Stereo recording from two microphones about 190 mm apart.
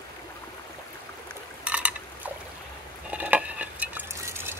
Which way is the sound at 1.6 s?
5° right (ahead or behind).